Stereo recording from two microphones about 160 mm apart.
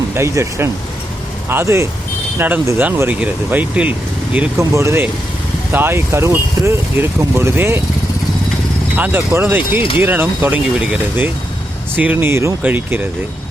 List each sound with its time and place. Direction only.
0.2 s speech: 15° right (ahead or behind)
9.0 s speech: 10° right (ahead or behind)